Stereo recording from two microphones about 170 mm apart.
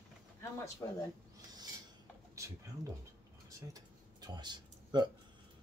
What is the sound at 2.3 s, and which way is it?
Speech, 20° right (ahead or behind).